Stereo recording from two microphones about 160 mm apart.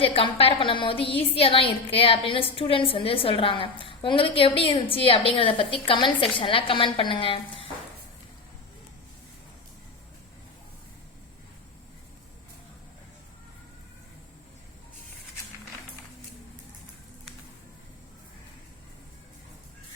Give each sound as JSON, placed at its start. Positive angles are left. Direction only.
{"t": 0.0, "sound": "a woman's voice", "side_deg": 35}